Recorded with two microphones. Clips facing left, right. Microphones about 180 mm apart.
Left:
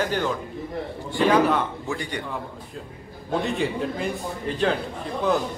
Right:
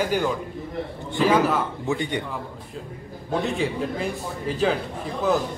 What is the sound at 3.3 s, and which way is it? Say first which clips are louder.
A man's voice: even; centre (ahead or behind).